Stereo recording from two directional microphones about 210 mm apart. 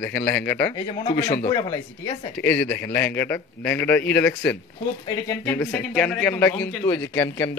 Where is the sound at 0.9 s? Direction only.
20° left (ahead or behind).